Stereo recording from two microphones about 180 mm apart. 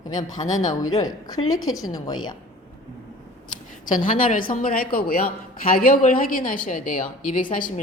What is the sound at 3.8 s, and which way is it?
Speech, 45° left (ahead or behind).